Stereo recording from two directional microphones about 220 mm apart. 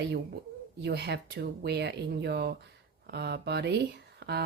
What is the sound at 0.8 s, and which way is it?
Speech, 50° right (ahead or behind).